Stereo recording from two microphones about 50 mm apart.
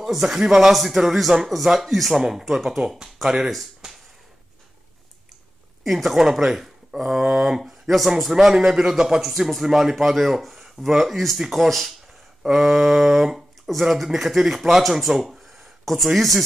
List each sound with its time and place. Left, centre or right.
0.0 s speech: centre
3.8 s a sound: centre
5.9 s speech: centre